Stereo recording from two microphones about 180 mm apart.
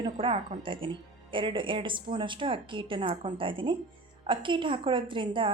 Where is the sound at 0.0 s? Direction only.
30° right (ahead or behind).